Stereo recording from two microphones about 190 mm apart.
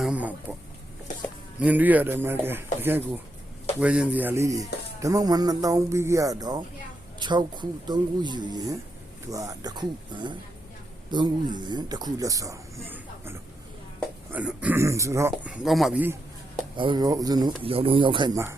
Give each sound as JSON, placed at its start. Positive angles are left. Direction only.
{"t": 0.0, "sound": "a sound", "side_deg": -5}
{"t": 1.5, "sound": "speech", "side_deg": -10}
{"t": 15.6, "sound": "speech", "side_deg": 0}
{"t": 16.7, "sound": "speech", "side_deg": -25}